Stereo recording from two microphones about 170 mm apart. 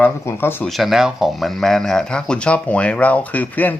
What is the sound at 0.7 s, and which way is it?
Speech, centre (ahead or behind).